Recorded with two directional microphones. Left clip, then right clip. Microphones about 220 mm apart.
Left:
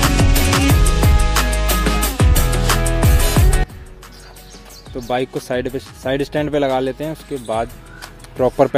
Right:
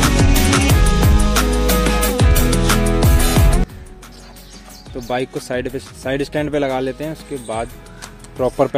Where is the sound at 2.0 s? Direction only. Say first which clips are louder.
Right 2 dB; centre (ahead or behind).